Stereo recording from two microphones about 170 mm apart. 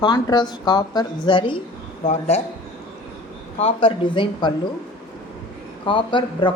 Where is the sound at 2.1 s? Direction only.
40° left (ahead or behind).